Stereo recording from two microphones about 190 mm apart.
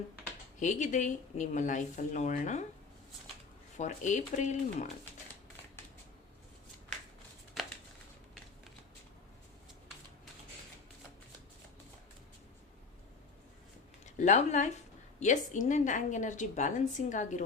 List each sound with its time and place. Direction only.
0.6 s a woman's voice: 40° left (ahead or behind)
3.8 s a woman's voice: 40° left (ahead or behind)
7.6 s a sound: centre (ahead or behind)
14.0 s a woman's voice: 40° left (ahead or behind)